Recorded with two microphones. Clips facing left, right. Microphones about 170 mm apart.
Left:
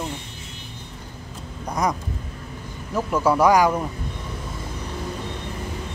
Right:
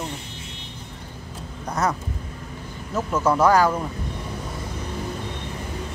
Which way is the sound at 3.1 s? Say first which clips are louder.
Left 1 dB; 10° left (ahead or behind).